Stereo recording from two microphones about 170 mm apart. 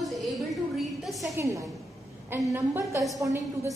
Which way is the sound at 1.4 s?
20° right (ahead or behind).